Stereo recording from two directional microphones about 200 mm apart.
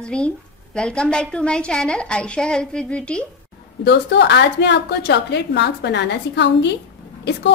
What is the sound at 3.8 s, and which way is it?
A woman's voice, 60° left (ahead or behind).